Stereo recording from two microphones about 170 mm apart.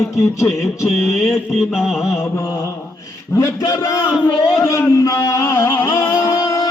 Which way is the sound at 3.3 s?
20° left (ahead or behind).